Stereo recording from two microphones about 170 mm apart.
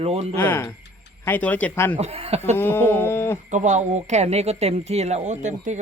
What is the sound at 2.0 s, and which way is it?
Speech, 35° right (ahead or behind).